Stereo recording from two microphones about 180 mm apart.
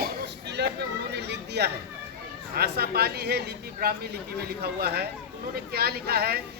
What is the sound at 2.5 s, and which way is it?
Speech, 60° right (ahead or behind).